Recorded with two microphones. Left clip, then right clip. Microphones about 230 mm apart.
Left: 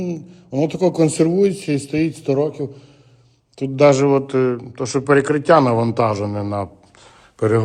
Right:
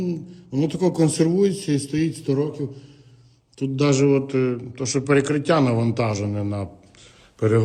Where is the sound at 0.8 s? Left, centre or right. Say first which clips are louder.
Left 4 dB; left.